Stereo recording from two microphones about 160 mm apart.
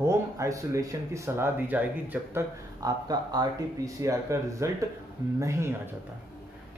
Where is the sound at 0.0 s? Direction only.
20° right (ahead or behind).